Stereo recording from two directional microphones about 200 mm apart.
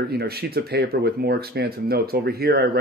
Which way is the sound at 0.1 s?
50° right (ahead or behind).